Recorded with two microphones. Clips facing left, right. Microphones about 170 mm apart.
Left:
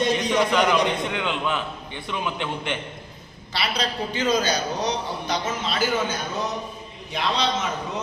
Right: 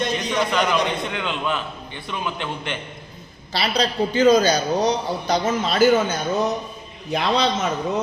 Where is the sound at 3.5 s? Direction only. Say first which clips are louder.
Right 5 dB; 35° right (ahead or behind); by 7.6 s 50° right (ahead or behind).